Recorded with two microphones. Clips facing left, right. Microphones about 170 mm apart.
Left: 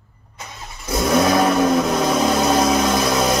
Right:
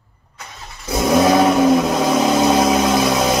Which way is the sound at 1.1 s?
15° right (ahead or behind).